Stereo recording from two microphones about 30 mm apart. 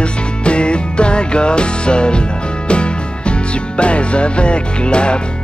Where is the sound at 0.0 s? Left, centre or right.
Left.